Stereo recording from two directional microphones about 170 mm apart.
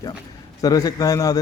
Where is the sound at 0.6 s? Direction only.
20° left (ahead or behind).